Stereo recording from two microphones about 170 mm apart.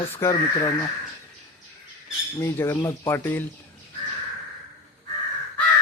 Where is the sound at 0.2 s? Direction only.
20° left (ahead or behind).